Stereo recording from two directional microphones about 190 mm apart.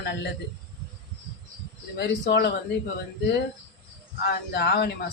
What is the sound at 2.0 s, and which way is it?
Speech, 60° left (ahead or behind).